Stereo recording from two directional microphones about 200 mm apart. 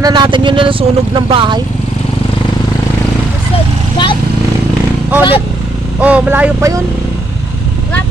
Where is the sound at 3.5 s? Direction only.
25° left (ahead or behind).